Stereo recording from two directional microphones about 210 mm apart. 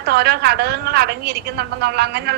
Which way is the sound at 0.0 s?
50° right (ahead or behind).